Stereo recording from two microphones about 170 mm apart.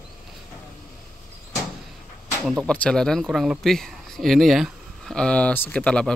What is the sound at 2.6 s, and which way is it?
Speech, 5° left (ahead or behind).